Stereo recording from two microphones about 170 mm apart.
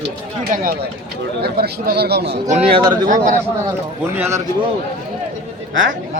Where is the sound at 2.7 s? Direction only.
25° right (ahead or behind).